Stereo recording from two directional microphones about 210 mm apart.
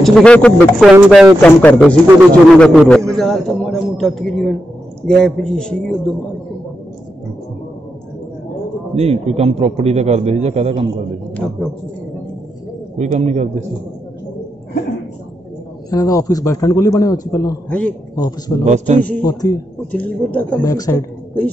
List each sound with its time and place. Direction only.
0.0 s a man's voice: 5° left (ahead or behind)
1.4 s a man's voice: 5° left (ahead or behind)
8.9 s a man's voice: 30° right (ahead or behind)
12.9 s a man's voice: 30° right (ahead or behind)
15.9 s a man's voice: 15° left (ahead or behind)
18.1 s a man's voice: 15° left (ahead or behind)
20.7 s a man's voice: 15° left (ahead or behind)